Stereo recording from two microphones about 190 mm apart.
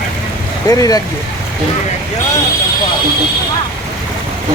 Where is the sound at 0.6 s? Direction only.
20° left (ahead or behind).